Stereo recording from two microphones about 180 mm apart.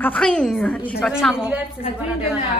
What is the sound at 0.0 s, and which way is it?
A woman's voice, 5° left (ahead or behind).